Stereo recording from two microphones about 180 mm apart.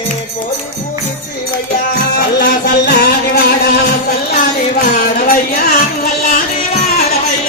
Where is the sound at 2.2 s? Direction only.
60° left (ahead or behind).